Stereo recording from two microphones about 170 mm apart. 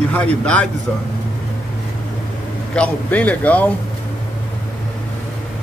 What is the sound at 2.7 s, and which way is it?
Speech, 5° left (ahead or behind).